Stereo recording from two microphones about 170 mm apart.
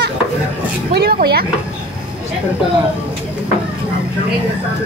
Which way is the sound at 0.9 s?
65° right (ahead or behind).